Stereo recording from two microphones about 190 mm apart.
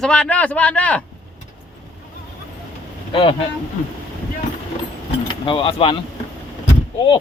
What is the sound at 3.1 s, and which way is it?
Speech, 25° left (ahead or behind).